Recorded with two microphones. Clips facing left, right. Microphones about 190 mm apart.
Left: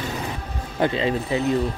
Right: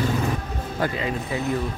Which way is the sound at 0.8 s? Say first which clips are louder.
Left 5 dB; 25° left (ahead or behind).